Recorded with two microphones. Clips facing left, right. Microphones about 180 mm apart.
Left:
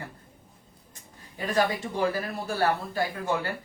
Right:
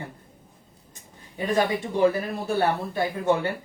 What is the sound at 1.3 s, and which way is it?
Speech, 20° right (ahead or behind).